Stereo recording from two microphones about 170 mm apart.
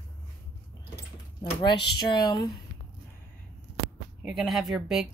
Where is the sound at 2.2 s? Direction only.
25° left (ahead or behind).